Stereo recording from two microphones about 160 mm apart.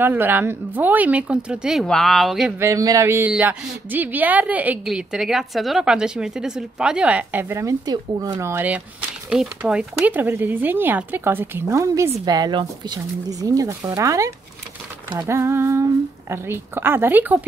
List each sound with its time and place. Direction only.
0.0 s a woman's voice: 10° right (ahead or behind)
2.6 s a woman's voice: 20° right (ahead or behind)